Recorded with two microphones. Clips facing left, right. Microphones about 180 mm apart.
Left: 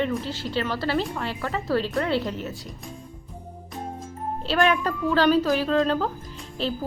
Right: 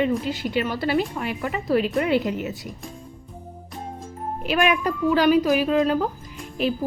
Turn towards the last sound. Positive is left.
turn(degrees=-15)  # may be behind; listen again after turning